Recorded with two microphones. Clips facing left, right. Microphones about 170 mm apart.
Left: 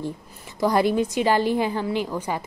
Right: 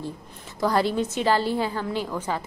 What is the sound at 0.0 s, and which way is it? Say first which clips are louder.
A woman's voice: left 3 dB; 15° left (ahead or behind).